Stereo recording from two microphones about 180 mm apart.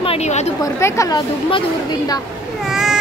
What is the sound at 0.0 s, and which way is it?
Speech, 35° left (ahead or behind).